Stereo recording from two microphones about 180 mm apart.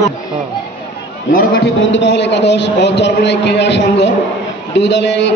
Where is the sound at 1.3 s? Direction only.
55° left (ahead or behind).